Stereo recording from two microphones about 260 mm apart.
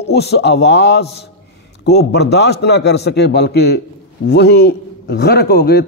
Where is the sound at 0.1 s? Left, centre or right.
Left.